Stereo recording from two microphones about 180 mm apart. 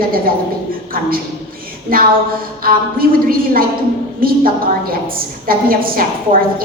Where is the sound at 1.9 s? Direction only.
55° right (ahead or behind).